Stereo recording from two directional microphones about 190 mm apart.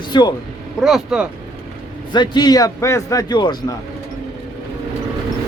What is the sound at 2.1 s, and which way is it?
A man's voice, 25° left (ahead or behind).